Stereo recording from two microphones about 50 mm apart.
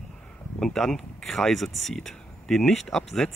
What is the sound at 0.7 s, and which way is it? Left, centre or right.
Speech, centre.